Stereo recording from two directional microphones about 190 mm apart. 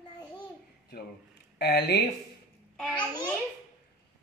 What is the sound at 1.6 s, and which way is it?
Speech, 60° left (ahead or behind).